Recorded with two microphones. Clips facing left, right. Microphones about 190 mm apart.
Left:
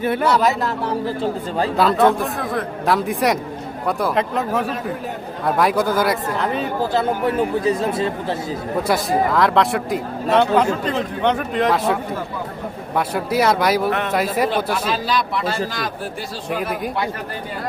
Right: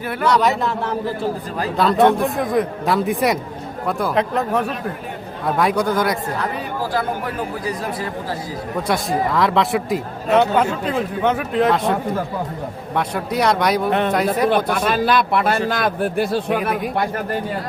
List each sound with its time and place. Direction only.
0.0 s speech: 25° left (ahead or behind)
0.3 s speech: 5° left (ahead or behind)
1.7 s speech: centre (ahead or behind)
2.2 s a man's voice: 15° right (ahead or behind)
2.8 s speech: centre (ahead or behind)
6.4 s speech: 25° left (ahead or behind)
8.9 s speech: centre (ahead or behind)
13.0 s speech: 5° left (ahead or behind)
14.5 s a man's voice: 55° right (ahead or behind)